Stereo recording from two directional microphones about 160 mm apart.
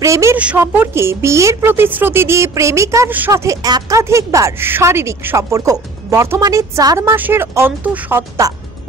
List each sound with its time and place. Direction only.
0.0 s a woman's voice: 20° right (ahead or behind)